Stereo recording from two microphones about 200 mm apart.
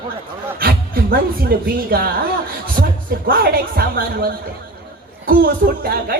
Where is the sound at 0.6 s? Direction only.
50° right (ahead or behind).